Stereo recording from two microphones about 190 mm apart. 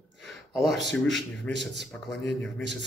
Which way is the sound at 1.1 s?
Centre (ahead or behind).